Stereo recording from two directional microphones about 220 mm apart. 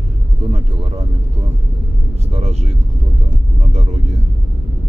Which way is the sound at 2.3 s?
30° right (ahead or behind).